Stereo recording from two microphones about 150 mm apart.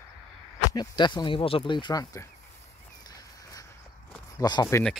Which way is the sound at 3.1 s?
25° left (ahead or behind).